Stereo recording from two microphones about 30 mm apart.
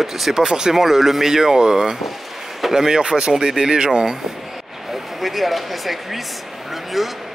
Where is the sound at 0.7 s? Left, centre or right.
Centre; by 4.2 s right.